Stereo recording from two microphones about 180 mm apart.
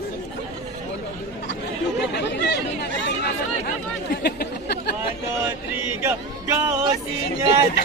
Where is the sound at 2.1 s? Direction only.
75° left (ahead or behind).